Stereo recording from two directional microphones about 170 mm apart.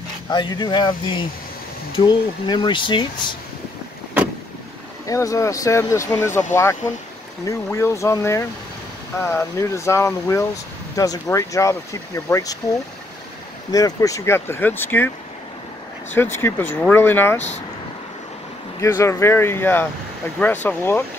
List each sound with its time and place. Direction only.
0.3 s speech: 25° left (ahead or behind)
5.0 s speech: 20° left (ahead or behind)
13.7 s speech: 20° left (ahead or behind)
16.2 s speech: 15° left (ahead or behind)
18.8 s speech: 15° left (ahead or behind)